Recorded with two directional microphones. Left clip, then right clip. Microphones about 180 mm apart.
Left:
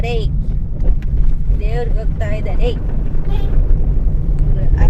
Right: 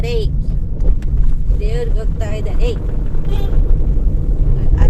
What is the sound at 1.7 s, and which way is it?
Speech, 30° left (ahead or behind).